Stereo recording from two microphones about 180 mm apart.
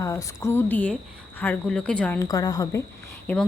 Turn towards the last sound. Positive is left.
turn(degrees=10)  # may be behind; listen again after turning